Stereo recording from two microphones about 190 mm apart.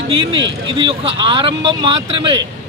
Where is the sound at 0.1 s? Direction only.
25° right (ahead or behind).